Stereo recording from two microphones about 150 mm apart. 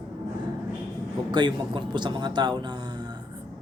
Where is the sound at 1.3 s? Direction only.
30° right (ahead or behind).